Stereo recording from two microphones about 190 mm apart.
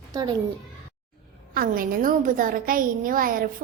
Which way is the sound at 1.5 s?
50° right (ahead or behind).